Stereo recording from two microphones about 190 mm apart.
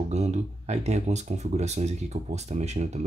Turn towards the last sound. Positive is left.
turn(degrees=-35)  # may be behind; listen again after turning